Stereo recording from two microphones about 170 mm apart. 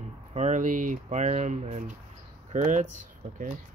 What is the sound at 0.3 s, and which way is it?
Speech, 45° right (ahead or behind).